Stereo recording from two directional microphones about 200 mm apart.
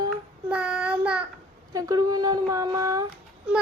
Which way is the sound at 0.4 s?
5° right (ahead or behind).